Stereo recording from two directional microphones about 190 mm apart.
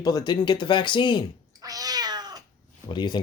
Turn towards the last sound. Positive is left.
turn(degrees=25)  # may be behind; listen again after turning